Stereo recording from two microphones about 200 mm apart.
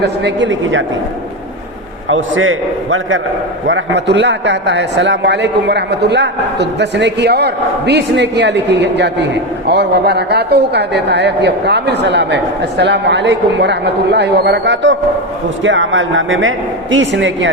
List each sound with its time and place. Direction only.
0.0 s a man's voice: 60° right (ahead or behind)
2.0 s a man's voice: 80° right
3.7 s a man's voice: 65° right (ahead or behind)